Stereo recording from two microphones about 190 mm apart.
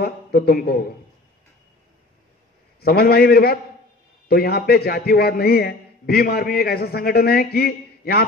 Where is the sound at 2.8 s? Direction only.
55° left (ahead or behind).